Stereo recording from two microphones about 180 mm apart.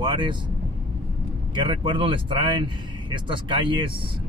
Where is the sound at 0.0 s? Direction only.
25° right (ahead or behind).